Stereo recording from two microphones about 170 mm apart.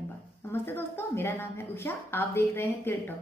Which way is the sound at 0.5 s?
15° left (ahead or behind).